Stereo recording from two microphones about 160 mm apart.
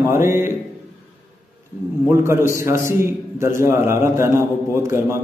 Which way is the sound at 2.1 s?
15° right (ahead or behind).